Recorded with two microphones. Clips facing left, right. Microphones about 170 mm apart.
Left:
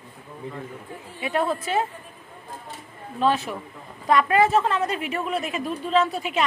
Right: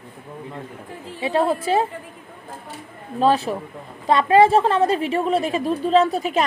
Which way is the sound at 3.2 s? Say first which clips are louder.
Right 4 dB; 35° right (ahead or behind).